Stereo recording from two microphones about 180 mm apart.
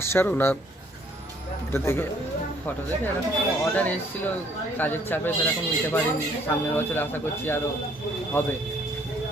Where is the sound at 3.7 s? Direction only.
10° left (ahead or behind).